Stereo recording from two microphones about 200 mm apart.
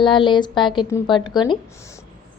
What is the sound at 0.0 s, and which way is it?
A woman's voice, 25° left (ahead or behind).